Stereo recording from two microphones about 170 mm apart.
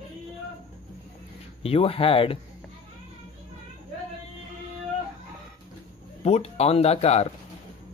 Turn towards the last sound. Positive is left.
turn(degrees=40)  # may be behind; listen again after turning